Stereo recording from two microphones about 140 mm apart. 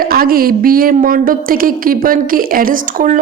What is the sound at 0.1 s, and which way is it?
A woman's voice, 90° right.